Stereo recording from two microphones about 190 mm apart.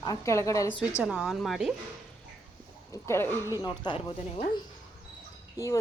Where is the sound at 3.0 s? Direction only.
15° left (ahead or behind).